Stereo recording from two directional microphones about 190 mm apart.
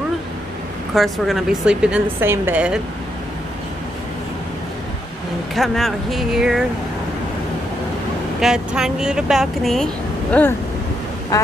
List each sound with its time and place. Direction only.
0.9 s a woman's voice: centre (ahead or behind)
5.5 s a woman's voice: centre (ahead or behind)
8.4 s a woman's voice: 5° right (ahead or behind); by 11.5 s 15° left (ahead or behind)